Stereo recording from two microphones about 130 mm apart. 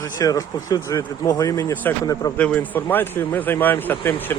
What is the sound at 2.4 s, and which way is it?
Speech, 10° left (ahead or behind).